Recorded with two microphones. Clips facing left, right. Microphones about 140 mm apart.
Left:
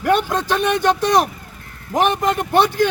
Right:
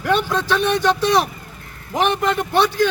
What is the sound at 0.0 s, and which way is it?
A man's voice, 50° left (ahead or behind).